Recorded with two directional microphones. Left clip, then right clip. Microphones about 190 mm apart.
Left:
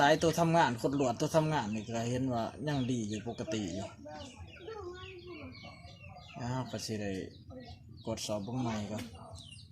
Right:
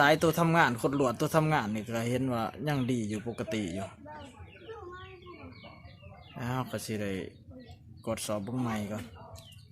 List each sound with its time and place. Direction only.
0.0 s speech: 30° right (ahead or behind)
6.3 s speech: 25° right (ahead or behind)